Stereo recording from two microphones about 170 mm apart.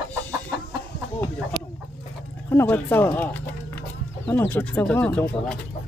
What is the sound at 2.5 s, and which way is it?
Music, 15° left (ahead or behind).